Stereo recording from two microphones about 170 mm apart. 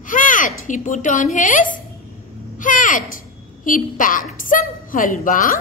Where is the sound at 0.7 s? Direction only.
50° left (ahead or behind).